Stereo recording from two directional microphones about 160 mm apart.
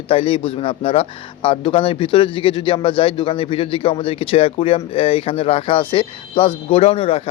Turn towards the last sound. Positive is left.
turn(degrees=35)  # may be behind; listen again after turning